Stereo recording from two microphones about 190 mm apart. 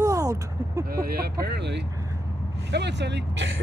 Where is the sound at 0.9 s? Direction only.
50° right (ahead or behind).